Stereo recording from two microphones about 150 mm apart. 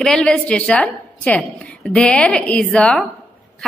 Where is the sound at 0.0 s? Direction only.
5° left (ahead or behind).